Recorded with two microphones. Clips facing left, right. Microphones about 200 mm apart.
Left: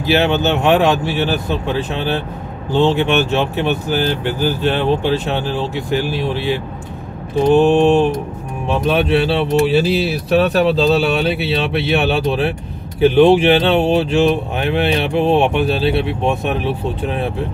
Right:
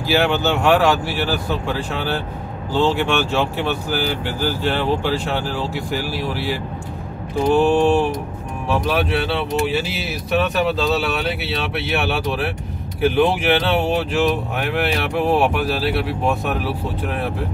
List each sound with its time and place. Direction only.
0.0 s speech: 20° left (ahead or behind)